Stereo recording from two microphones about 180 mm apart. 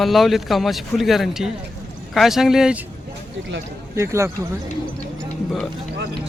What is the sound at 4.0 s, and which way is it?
Speech, 15° right (ahead or behind).